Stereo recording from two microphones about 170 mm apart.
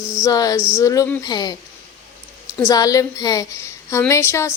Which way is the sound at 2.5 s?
20° left (ahead or behind).